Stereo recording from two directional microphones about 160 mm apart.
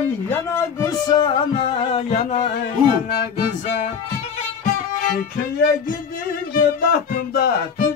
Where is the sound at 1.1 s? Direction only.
30° left (ahead or behind).